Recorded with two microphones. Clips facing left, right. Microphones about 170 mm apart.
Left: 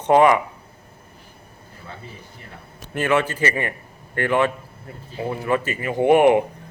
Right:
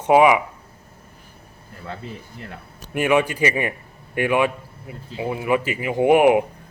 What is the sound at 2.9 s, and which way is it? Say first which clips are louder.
A man's voice: right 2 dB; 15° right (ahead or behind).